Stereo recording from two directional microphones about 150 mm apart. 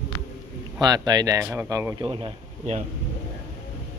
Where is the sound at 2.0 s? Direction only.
35° right (ahead or behind).